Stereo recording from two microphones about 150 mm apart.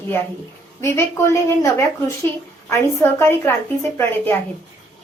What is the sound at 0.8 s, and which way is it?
A woman's voice, 20° left (ahead or behind).